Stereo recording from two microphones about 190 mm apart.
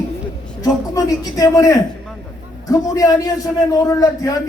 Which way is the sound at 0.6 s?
20° left (ahead or behind).